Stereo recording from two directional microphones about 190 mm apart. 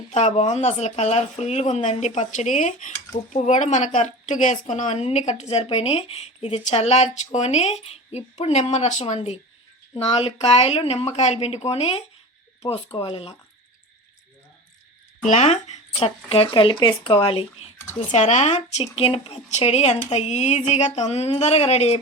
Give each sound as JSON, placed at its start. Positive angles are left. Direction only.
{"t": 0.1, "sound": "a woman's voice", "side_deg": 40}
{"t": 15.2, "sound": "a woman's voice", "side_deg": 40}